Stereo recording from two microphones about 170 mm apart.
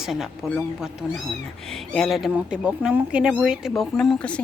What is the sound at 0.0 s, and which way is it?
Speech, centre (ahead or behind).